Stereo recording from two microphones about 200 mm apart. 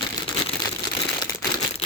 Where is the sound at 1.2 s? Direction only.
20° left (ahead or behind).